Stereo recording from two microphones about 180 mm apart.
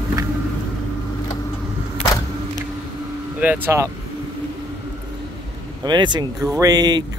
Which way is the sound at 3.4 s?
10° right (ahead or behind).